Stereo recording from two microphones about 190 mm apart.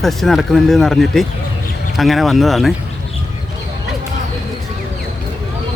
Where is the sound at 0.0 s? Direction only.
Centre (ahead or behind).